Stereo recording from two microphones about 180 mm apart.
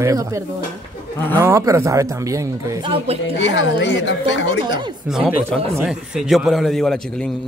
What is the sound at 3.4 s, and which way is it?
A woman's voice, 80° left.